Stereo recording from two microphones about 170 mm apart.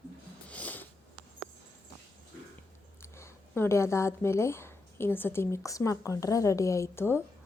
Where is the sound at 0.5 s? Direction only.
10° left (ahead or behind).